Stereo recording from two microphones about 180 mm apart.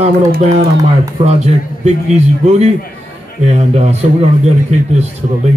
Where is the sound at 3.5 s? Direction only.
35° right (ahead or behind).